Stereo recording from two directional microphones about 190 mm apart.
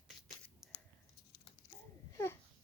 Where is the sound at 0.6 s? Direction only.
Centre (ahead or behind).